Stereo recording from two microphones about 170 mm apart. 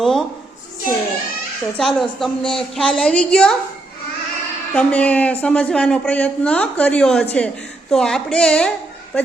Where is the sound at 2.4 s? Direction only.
30° left (ahead or behind).